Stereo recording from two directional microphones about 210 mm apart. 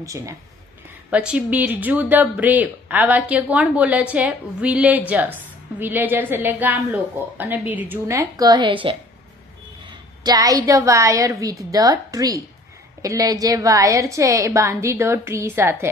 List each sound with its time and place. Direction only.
0.0 s a woman's voice: 15° right (ahead or behind)